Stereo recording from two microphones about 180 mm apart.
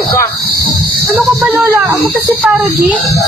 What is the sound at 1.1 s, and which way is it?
Speech, centre (ahead or behind).